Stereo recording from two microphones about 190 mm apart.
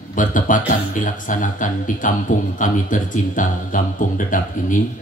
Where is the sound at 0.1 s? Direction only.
45° left (ahead or behind).